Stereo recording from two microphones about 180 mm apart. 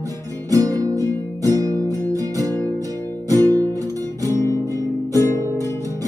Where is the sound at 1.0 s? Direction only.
15° left (ahead or behind).